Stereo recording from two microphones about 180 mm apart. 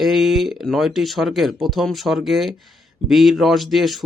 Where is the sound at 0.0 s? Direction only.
Centre (ahead or behind).